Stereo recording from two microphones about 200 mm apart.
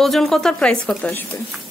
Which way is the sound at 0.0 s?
Centre (ahead or behind).